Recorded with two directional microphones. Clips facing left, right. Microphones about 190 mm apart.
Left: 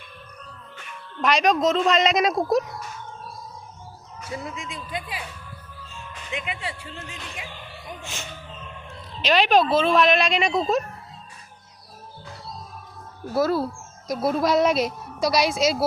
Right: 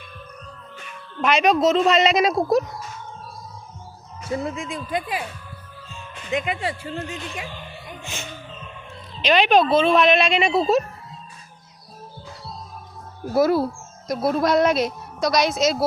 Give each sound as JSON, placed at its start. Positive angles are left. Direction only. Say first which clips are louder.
{"t": 1.2, "sound": "a woman's voice", "louder": "right 2 dB", "side_deg": -5}
{"t": 4.5, "sound": "speech", "louder": "right 6 dB", "side_deg": -50}
{"t": 6.3, "sound": "speech", "louder": "right 8 dB", "side_deg": -40}
{"t": 9.2, "sound": "a woman's voice", "louder": "right 2 dB", "side_deg": 0}
{"t": 13.3, "sound": "speech", "louder": "right 4 dB", "side_deg": -15}
{"t": 14.1, "sound": "a woman's voice", "louder": "right 2 dB", "side_deg": 0}